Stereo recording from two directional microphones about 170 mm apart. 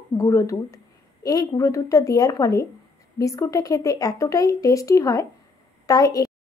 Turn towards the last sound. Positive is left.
turn(degrees=20)  # may be behind; listen again after turning